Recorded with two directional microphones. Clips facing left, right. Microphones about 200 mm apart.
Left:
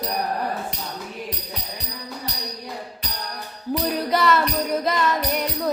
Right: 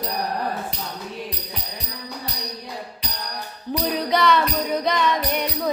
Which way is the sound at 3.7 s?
5° left (ahead or behind).